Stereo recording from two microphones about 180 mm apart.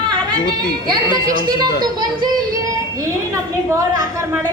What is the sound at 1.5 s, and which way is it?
A woman's voice, 20° right (ahead or behind).